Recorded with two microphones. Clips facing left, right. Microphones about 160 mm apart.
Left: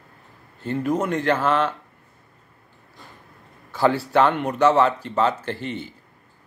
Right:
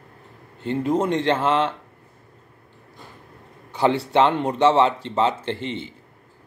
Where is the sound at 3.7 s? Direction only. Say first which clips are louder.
Even; 20° right (ahead or behind).